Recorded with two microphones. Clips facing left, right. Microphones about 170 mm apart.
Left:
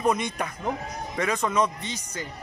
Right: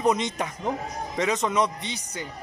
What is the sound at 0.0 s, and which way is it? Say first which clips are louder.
Speech: right 1 dB; 20° right (ahead or behind).